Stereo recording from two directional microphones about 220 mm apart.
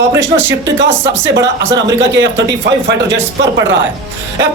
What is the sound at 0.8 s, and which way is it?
Speech, 55° right (ahead or behind).